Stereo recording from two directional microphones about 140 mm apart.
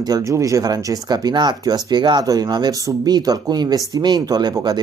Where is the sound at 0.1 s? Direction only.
25° right (ahead or behind).